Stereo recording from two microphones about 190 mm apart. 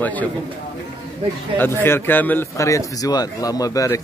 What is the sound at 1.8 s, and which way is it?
Speech, 10° left (ahead or behind).